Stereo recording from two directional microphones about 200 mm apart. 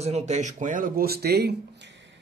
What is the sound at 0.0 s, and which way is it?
A man's voice, 35° right (ahead or behind).